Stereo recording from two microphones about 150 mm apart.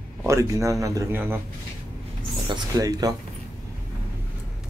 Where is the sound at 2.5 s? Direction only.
25° right (ahead or behind).